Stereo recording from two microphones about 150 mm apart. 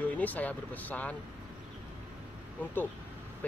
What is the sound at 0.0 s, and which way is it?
Speech, 10° left (ahead or behind).